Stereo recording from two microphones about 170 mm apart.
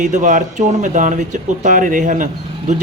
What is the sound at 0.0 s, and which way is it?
Speech, 45° right (ahead or behind).